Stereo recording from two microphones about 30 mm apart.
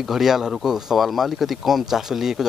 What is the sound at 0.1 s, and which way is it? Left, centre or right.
Speech, centre.